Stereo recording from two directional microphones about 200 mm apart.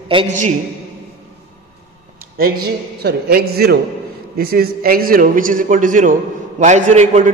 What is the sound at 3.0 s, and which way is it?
A man's voice, 50° right (ahead or behind).